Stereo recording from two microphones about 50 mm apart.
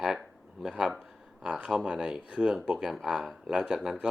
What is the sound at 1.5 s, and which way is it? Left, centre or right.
Speech, centre.